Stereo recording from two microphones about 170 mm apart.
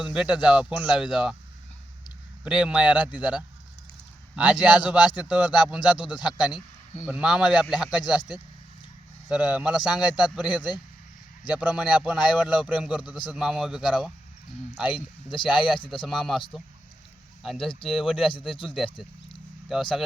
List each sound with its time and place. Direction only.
0.0 s speech: 5° right (ahead or behind)
2.4 s a man's voice: 5° right (ahead or behind)
9.3 s a man's voice: 5° right (ahead or behind)
14.9 s speech: 30° left (ahead or behind)
15.4 s speech: 5° right (ahead or behind)
17.4 s speech: centre (ahead or behind)